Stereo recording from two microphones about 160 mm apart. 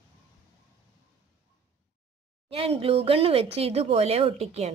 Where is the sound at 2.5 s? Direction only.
35° right (ahead or behind).